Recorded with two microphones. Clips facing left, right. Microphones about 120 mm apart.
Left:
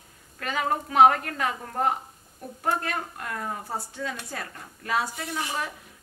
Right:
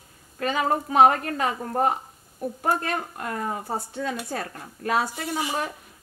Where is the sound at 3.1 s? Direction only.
35° right (ahead or behind).